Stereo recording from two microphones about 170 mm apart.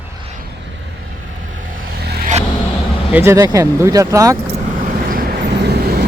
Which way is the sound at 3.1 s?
15° right (ahead or behind).